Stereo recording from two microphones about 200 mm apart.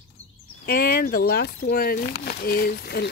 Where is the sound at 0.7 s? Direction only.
50° left (ahead or behind).